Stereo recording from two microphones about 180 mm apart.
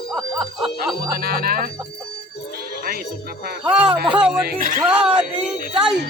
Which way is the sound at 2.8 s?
55° right (ahead or behind).